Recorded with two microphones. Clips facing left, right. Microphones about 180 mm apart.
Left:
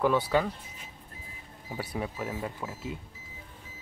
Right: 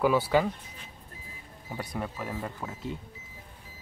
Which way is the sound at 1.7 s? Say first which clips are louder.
Left 1 dB; 5° left (ahead or behind).